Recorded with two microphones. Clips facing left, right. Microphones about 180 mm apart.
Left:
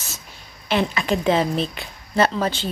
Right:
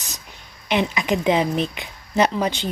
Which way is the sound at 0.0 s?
15° right (ahead or behind).